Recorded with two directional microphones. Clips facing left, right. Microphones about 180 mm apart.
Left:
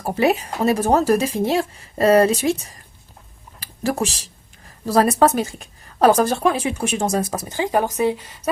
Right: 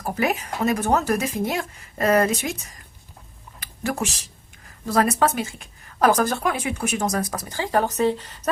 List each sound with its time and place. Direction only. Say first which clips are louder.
0.0 s a woman's voice: left 5 dB; 30° left (ahead or behind); by 8.4 s 10° left (ahead or behind)